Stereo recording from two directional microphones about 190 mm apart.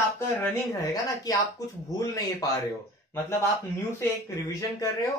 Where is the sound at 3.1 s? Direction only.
10° left (ahead or behind).